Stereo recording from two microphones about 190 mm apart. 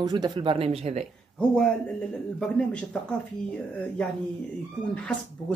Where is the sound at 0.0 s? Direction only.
20° right (ahead or behind).